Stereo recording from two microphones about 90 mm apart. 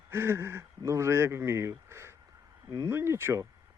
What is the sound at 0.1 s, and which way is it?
A man's voice, 30° right (ahead or behind).